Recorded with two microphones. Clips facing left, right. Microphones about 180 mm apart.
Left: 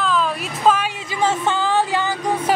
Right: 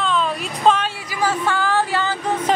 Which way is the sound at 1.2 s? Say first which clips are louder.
Left 1 dB; 20° left (ahead or behind).